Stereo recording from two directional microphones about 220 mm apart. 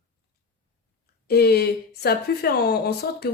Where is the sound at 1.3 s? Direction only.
45° left (ahead or behind).